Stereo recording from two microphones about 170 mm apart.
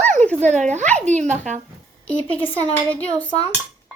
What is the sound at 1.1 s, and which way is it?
Speech, 45° right (ahead or behind).